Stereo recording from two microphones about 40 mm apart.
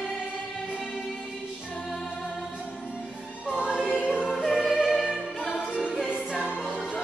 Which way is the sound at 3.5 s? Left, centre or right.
Centre.